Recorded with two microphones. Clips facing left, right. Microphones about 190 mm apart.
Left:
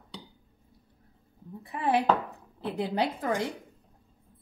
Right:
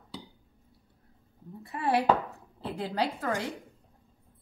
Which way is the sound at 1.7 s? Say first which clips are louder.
Even; 15° left (ahead or behind).